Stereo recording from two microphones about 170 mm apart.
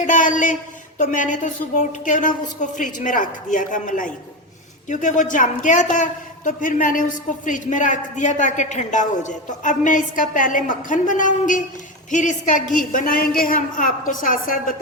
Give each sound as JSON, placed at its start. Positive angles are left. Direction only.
{"t": 0.0, "sound": "a woman's voice", "side_deg": 50}